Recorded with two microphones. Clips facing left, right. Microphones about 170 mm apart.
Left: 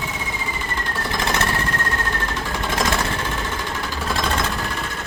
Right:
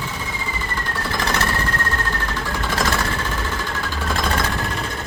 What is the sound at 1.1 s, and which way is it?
Engine, 20° left (ahead or behind).